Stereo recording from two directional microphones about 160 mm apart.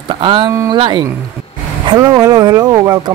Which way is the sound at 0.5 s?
20° right (ahead or behind).